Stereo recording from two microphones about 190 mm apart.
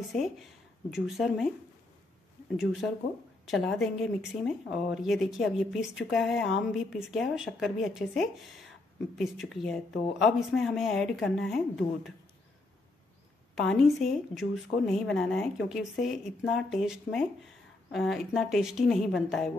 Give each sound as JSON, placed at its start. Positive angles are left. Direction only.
{"t": 0.1, "sound": "speech", "side_deg": 0}
{"t": 2.5, "sound": "a woman's voice", "side_deg": 0}
{"t": 13.6, "sound": "a woman's voice", "side_deg": 0}